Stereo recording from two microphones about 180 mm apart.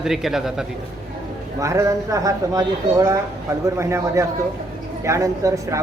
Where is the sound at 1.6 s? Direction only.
15° right (ahead or behind).